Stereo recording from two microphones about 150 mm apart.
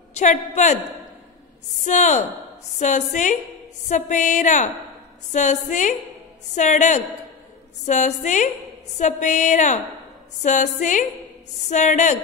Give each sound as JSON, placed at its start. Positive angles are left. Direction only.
{"t": 0.1, "sound": "music", "side_deg": 55}
{"t": 1.9, "sound": "music", "side_deg": 55}